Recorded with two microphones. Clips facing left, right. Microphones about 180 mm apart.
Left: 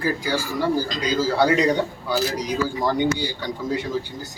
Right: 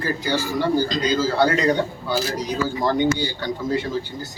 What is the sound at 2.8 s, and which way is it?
Speech, 10° left (ahead or behind).